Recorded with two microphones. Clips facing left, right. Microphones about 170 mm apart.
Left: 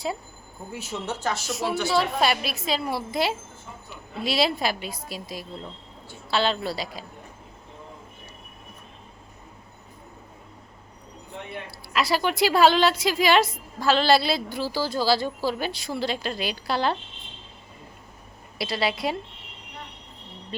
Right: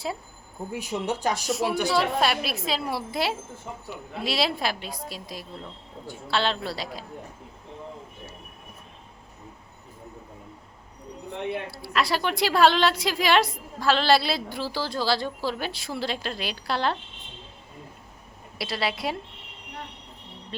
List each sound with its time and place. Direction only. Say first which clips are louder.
0.7 s speech: right 3 dB; 15° right (ahead or behind)
1.5 s a woman's voice: right 1 dB; centre (ahead or behind)
11.9 s a woman's voice: left 2 dB; centre (ahead or behind)
18.6 s a woman's voice: left 2 dB; centre (ahead or behind)
20.5 s vehicle: left 2 dB; centre (ahead or behind)